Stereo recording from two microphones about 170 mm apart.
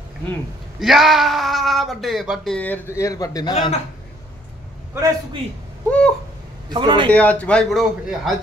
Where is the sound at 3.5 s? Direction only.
35° left (ahead or behind).